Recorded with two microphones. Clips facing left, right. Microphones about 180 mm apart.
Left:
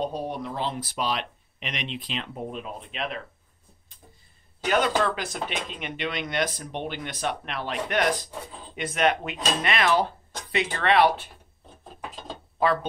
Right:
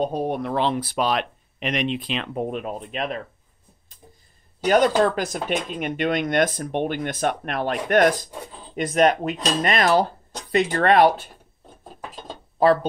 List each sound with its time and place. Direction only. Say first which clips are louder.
0.0 s speech: right 6 dB; 50° right (ahead or behind)
2.9 s speech: right 4 dB; 45° right (ahead or behind)
4.6 s speech: right 6 dB; 40° right (ahead or behind)